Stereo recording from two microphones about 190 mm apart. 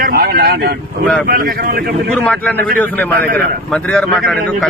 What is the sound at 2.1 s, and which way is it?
Speech, 5° left (ahead or behind).